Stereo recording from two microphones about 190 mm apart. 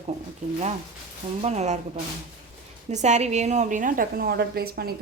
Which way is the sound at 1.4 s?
35° right (ahead or behind).